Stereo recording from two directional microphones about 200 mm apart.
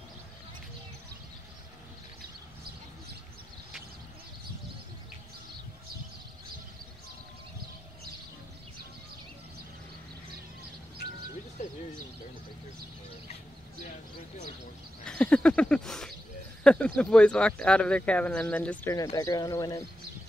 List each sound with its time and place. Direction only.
15.0 s a sound: 5° left (ahead or behind)
16.6 s speech: 5° left (ahead or behind)
18.9 s speech: 15° left (ahead or behind)